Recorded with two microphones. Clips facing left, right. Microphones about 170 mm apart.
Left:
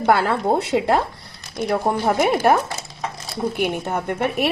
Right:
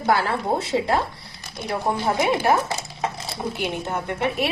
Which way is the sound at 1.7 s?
50° left (ahead or behind).